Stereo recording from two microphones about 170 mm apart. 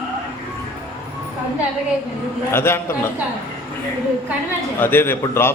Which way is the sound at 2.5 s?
15° left (ahead or behind).